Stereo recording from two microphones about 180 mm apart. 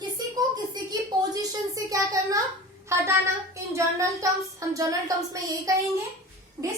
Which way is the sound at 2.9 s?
15° right (ahead or behind).